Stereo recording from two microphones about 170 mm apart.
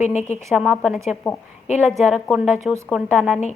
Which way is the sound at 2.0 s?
Centre (ahead or behind).